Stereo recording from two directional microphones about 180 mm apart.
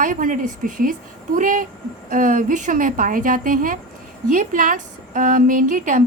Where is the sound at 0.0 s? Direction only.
50° right (ahead or behind).